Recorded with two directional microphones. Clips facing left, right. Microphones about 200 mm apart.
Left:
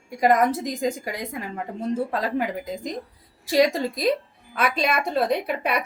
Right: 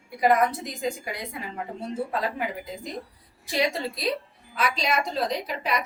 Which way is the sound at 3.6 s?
45° left (ahead or behind).